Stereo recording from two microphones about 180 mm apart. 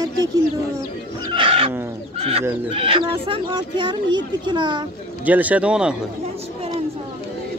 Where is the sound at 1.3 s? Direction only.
30° right (ahead or behind).